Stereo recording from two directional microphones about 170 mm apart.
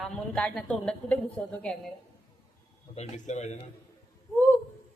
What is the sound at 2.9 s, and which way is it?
Speech, 40° left (ahead or behind).